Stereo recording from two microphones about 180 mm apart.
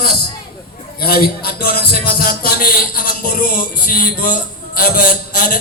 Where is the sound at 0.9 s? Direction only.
60° left (ahead or behind).